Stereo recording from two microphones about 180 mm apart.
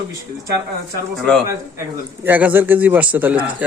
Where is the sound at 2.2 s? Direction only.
10° right (ahead or behind).